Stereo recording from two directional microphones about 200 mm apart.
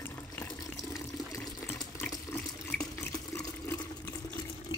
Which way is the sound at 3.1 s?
15° left (ahead or behind).